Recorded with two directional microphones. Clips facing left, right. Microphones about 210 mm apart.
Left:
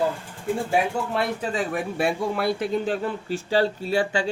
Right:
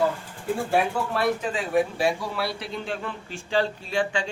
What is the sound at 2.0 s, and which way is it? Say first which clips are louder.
Speech: left 2 dB; 55° left (ahead or behind).